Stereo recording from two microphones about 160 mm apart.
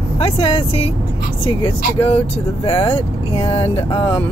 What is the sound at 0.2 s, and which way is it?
Speech, 35° left (ahead or behind).